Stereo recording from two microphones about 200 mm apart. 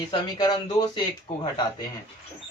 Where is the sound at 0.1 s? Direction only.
20° left (ahead or behind).